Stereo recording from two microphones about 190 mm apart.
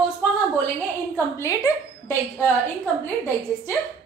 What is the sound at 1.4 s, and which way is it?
Speech, 15° left (ahead or behind).